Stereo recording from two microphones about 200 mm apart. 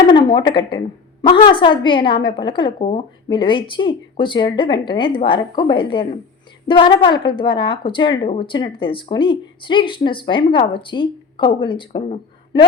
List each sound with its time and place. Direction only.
0.1 s speech: 20° left (ahead or behind)